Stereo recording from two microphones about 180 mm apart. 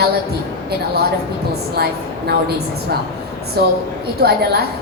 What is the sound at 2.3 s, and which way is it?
A woman's voice, 60° right (ahead or behind).